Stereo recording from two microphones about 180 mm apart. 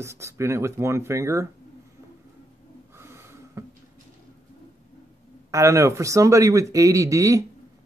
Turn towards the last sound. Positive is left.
turn(degrees=-20)  # may be behind; listen again after turning